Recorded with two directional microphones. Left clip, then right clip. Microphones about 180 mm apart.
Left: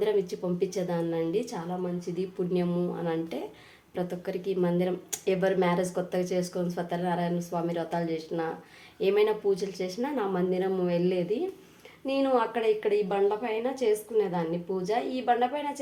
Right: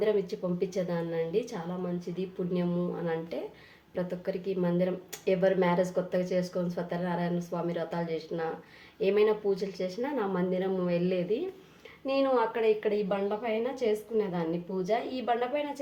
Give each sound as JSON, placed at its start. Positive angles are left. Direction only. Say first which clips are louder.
{"t": 0.0, "sound": "speech", "louder": "left 1 dB", "side_deg": 20}
{"t": 12.8, "sound": "a woman's voice", "louder": "left 4 dB", "side_deg": 40}